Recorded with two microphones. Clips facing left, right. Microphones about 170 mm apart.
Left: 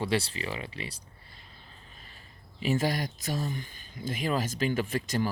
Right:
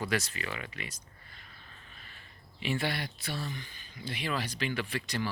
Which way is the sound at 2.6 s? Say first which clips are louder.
Left 5 dB; 40° left (ahead or behind).